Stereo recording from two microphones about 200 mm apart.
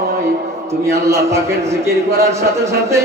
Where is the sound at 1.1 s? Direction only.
15° right (ahead or behind).